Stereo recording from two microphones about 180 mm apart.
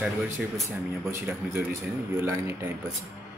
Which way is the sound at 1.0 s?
15° right (ahead or behind).